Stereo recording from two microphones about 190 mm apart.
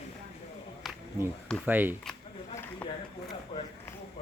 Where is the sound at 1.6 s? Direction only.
10° right (ahead or behind).